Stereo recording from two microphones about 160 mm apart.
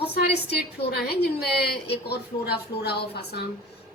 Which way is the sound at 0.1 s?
80° left.